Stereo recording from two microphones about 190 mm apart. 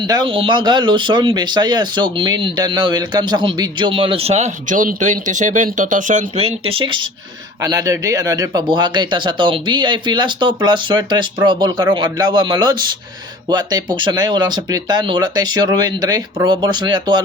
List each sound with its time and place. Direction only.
0.0 s speech: 25° right (ahead or behind)